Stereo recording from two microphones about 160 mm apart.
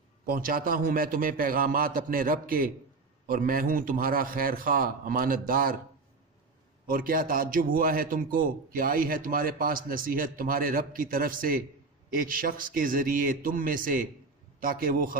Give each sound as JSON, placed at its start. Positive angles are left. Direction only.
{"t": 0.3, "sound": "a man's voice", "side_deg": -60}
{"t": 6.8, "sound": "a man's voice", "side_deg": -60}